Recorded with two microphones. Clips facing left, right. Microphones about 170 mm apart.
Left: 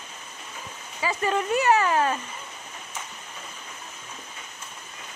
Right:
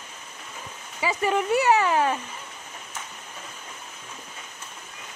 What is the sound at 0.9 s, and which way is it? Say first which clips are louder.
Speech: right 1 dB; 15° right (ahead or behind).